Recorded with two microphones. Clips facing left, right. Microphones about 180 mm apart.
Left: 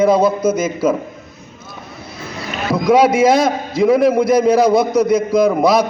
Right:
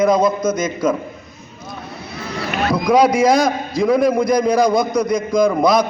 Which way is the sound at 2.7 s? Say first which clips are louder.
Left 2 dB; 5° left (ahead or behind).